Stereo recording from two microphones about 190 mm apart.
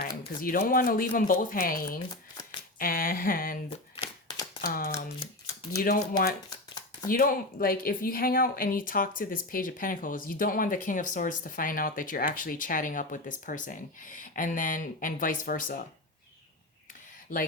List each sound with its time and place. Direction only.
0.0 s speech: 50° left (ahead or behind)
3.7 s shuffling cards: 30° left (ahead or behind)
4.6 s speech: 50° left (ahead or behind)